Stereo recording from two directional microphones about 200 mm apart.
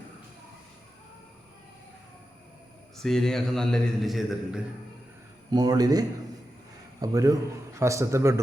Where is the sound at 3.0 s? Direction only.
Centre (ahead or behind).